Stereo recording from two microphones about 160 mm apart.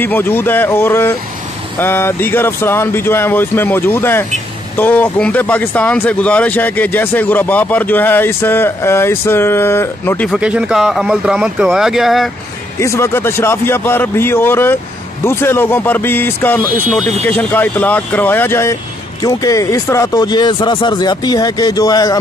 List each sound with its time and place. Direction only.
0.0 s speech: 10° left (ahead or behind)
10.3 s speech: 5° right (ahead or behind)
12.8 s speech: 15° left (ahead or behind)